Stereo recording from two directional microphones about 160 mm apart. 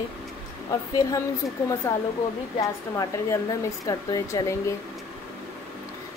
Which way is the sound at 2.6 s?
20° left (ahead or behind).